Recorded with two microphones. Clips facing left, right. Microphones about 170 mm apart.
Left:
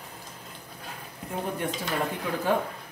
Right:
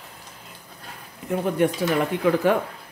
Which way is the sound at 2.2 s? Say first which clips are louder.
Right 11 dB; 90° right.